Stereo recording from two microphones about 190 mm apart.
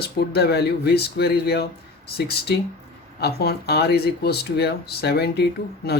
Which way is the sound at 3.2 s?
55° left (ahead or behind).